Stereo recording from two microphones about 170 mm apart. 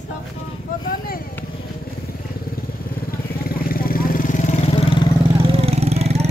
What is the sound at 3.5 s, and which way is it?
Vehicle, 60° left (ahead or behind).